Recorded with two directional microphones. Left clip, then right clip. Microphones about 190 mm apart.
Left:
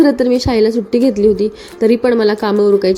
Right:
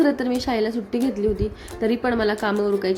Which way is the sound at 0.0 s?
20° left (ahead or behind).